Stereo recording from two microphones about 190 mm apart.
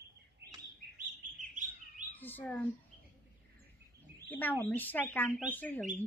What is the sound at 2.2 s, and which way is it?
Speech, 10° left (ahead or behind).